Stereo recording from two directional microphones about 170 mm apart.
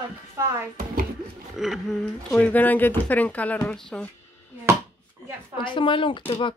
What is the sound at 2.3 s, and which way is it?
Speech, 10° left (ahead or behind).